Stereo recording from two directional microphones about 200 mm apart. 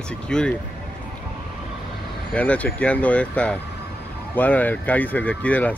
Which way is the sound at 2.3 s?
5° left (ahead or behind).